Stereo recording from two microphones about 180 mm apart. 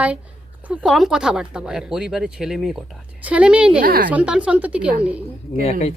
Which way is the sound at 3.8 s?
55° right (ahead or behind).